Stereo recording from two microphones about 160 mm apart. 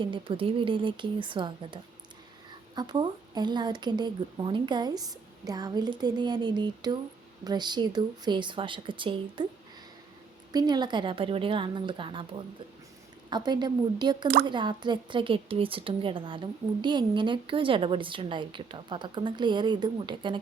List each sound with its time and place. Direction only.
0.0 s a woman's voice: 30° right (ahead or behind)
10.5 s a woman's voice: 25° right (ahead or behind)
13.3 s a woman's voice: 25° right (ahead or behind)